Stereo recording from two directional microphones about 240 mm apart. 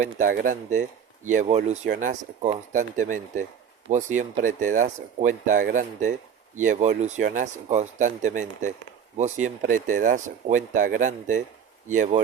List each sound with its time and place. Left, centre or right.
0.0 s speech: right